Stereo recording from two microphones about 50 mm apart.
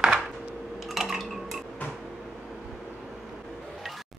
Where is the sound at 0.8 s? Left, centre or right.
Centre.